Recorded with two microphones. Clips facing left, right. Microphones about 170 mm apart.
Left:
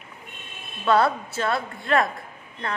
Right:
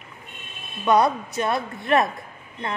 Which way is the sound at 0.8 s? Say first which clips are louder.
Right 1 dB; 15° right (ahead or behind).